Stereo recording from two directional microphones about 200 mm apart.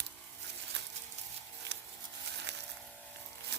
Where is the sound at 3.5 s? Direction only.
55° right (ahead or behind).